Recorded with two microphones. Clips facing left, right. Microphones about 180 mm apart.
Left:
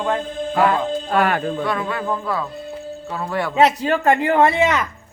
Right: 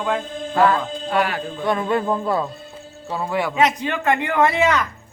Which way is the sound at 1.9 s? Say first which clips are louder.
Right 3 dB; 25° right (ahead or behind).